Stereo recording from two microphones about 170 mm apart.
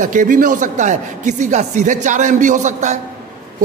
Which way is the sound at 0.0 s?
50° right (ahead or behind).